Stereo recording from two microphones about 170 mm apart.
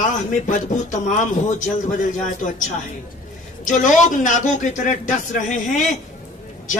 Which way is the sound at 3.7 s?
50° left (ahead or behind).